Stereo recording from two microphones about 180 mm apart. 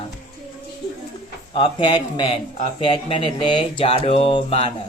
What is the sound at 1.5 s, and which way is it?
Speech, 30° left (ahead or behind).